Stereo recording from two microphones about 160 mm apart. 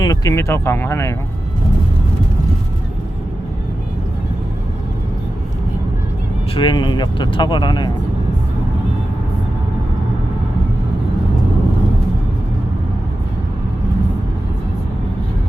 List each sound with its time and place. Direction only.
0.0 s speech: 20° left (ahead or behind)
6.6 s speech: 30° left (ahead or behind)